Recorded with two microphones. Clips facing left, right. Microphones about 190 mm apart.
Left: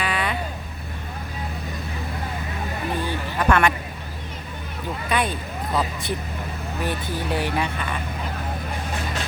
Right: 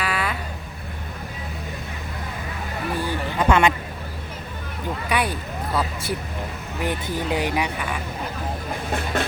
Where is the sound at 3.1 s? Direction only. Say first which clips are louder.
Right 2 dB; 20° right (ahead or behind).